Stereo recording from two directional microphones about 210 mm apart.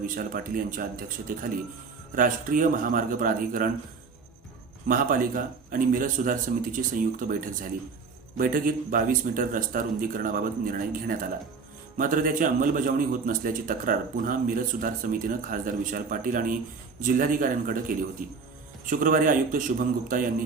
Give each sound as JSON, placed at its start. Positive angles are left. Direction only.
{"t": 0.0, "sound": "a man's voice", "side_deg": -40}
{"t": 2.1, "sound": "a man's voice", "side_deg": -40}
{"t": 4.9, "sound": "a man's voice", "side_deg": -40}